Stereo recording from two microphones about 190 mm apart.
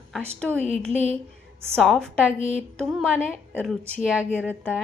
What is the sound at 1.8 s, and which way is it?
Speech, centre (ahead or behind).